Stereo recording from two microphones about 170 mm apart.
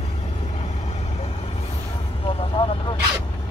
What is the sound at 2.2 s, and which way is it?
Vehicle, 30° left (ahead or behind).